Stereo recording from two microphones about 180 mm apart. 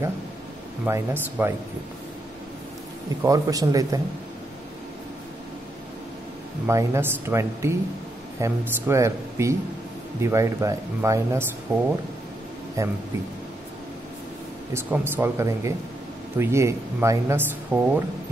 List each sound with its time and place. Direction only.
0.8 s speech: 15° right (ahead or behind)
3.3 s speech: 20° right (ahead or behind)
6.7 s speech: 15° right (ahead or behind)
14.7 s speech: 10° right (ahead or behind)